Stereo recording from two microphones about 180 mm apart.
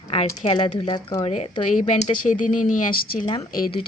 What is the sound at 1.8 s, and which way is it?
Speech, 40° left (ahead or behind).